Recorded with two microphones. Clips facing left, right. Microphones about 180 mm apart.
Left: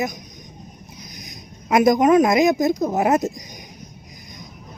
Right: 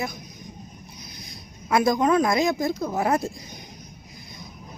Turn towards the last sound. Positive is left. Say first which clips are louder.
# left 5 dB
turn(degrees=20)  # may be behind; listen again after turning